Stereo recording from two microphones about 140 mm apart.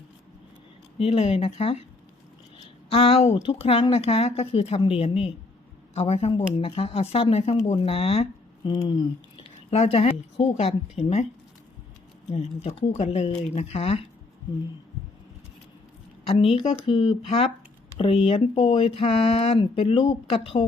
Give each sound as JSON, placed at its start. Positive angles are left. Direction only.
{"t": 0.9, "sound": "speech", "side_deg": 45}
{"t": 2.9, "sound": "speech", "side_deg": 45}
{"t": 8.7, "sound": "speech", "side_deg": 35}
{"t": 9.6, "sound": "speech", "side_deg": 50}
{"t": 12.6, "sound": "speech", "side_deg": 45}
{"t": 16.2, "sound": "a woman's voice", "side_deg": 45}